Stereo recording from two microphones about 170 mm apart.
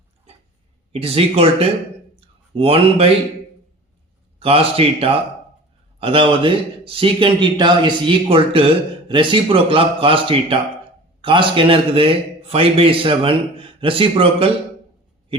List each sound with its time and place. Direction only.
0.9 s a man's voice: 35° right (ahead or behind)
2.1 s a sound: 35° right (ahead or behind)
4.4 s a man's voice: 35° right (ahead or behind)